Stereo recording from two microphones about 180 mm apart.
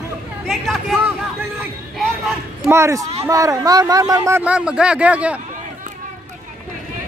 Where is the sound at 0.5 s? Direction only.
Centre (ahead or behind).